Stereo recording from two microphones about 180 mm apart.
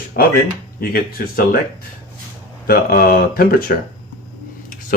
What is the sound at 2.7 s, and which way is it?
Speech, 55° left (ahead or behind).